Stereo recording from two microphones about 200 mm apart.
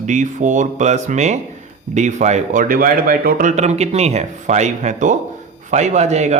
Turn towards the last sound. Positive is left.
turn(degrees=-35)  # may be behind; listen again after turning